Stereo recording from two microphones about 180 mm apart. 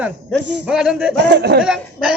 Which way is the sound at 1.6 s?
5° right (ahead or behind).